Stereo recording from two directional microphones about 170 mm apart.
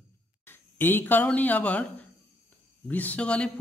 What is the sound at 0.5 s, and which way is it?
A man's voice, 10° left (ahead or behind).